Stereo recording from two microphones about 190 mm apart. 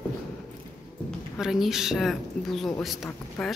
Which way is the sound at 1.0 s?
Centre (ahead or behind).